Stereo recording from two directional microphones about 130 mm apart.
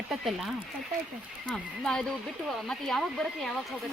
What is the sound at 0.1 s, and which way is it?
Speech, centre (ahead or behind).